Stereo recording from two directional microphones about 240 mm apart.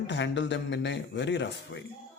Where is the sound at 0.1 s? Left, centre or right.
Left.